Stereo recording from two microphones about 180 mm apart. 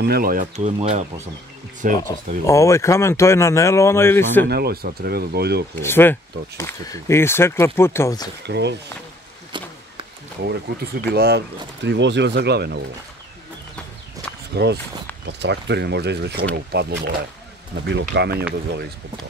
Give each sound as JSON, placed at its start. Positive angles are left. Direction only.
{"t": 0.0, "sound": "speech", "side_deg": -55}
{"t": 0.6, "sound": "speech", "side_deg": -35}
{"t": 2.0, "sound": "speech", "side_deg": 15}
{"t": 4.5, "sound": "speech", "side_deg": -60}
{"t": 5.8, "sound": "speech", "side_deg": 10}
{"t": 8.5, "sound": "speech", "side_deg": -70}
{"t": 9.5, "sound": "speech", "side_deg": -25}
{"t": 11.1, "sound": "speech", "side_deg": -65}
{"t": 14.5, "sound": "speech", "side_deg": -65}